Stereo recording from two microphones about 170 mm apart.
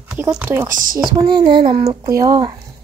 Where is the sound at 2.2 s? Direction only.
25° right (ahead or behind).